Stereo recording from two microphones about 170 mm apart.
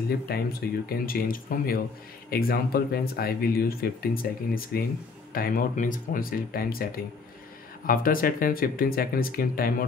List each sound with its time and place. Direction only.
0.3 s speech: 65° left (ahead or behind)